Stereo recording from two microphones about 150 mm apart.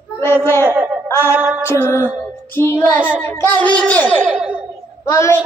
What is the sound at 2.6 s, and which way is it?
Music, 15° left (ahead or behind).